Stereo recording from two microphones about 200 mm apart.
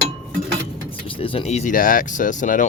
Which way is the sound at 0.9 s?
25° left (ahead or behind).